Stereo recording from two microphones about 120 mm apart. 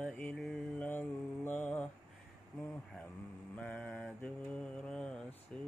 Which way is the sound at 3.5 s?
10° left (ahead or behind).